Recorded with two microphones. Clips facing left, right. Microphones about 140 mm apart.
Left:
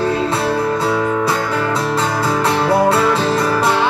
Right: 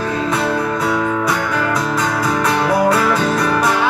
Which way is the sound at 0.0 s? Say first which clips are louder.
Left 2 dB; 30° left (ahead or behind).